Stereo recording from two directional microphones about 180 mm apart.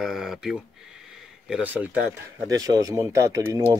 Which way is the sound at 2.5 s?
20° right (ahead or behind).